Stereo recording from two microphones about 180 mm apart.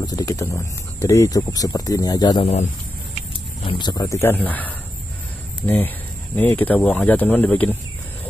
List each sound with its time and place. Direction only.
0.0 s speech: 20° left (ahead or behind)
3.6 s speech: 25° left (ahead or behind); by 7.7 s 10° left (ahead or behind)